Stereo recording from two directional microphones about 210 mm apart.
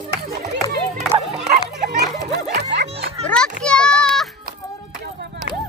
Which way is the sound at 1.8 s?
50° right (ahead or behind).